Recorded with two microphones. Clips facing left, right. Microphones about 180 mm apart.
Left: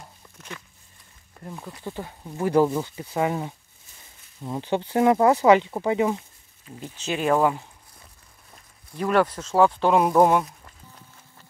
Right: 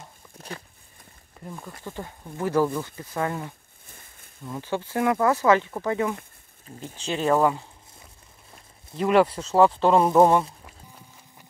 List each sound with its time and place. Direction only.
1.4 s speech: centre (ahead or behind)
1.9 s speech: 20° left (ahead or behind)
3.8 s a sound: 55° right (ahead or behind)
4.5 s speech: 25° left (ahead or behind)
7.1 s speech: 15° left (ahead or behind)
8.9 s speech: 5° right (ahead or behind)